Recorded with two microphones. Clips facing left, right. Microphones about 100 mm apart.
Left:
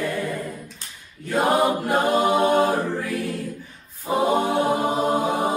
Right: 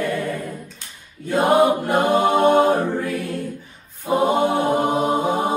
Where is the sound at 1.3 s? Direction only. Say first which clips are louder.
Right 4 dB; 20° right (ahead or behind).